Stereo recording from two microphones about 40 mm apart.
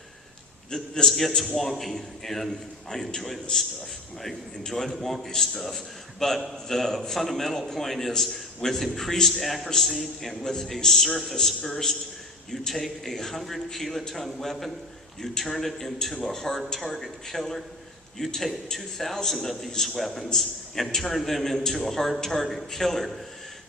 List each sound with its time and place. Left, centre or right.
0.7 s a man's voice: centre
10.4 s a man's voice: centre